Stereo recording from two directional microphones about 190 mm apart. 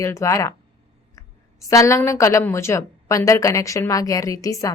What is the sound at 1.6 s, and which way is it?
A woman's voice, 15° left (ahead or behind).